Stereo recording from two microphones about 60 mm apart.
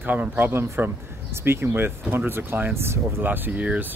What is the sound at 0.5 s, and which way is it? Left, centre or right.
A man's voice, right.